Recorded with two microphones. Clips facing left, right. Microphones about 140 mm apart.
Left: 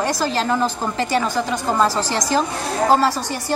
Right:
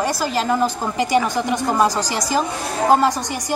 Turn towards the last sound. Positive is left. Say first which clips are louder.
# right 1 dB
turn(degrees=-15)  # may be behind; listen again after turning